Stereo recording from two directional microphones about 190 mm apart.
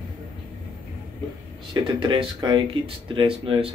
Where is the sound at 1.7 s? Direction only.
25° right (ahead or behind).